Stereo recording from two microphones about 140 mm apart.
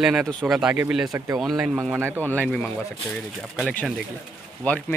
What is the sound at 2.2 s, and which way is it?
Speech, 5° left (ahead or behind).